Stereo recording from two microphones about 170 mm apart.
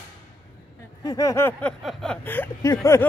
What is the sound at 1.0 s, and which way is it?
Speech, 20° left (ahead or behind).